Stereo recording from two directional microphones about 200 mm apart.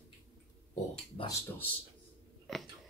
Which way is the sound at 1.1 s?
20° left (ahead or behind).